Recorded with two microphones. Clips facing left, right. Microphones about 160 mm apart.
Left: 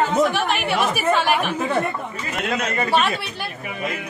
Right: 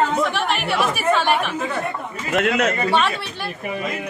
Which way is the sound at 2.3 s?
70° right (ahead or behind).